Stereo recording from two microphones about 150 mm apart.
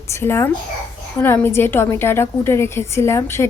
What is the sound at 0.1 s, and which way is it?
A woman's voice, 15° left (ahead or behind).